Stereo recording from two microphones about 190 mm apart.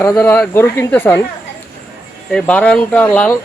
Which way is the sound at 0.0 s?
10° left (ahead or behind).